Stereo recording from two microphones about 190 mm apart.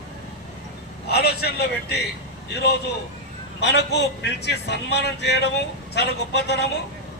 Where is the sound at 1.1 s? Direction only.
55° left (ahead or behind).